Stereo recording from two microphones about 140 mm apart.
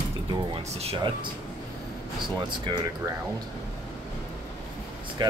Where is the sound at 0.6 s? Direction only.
50° right (ahead or behind).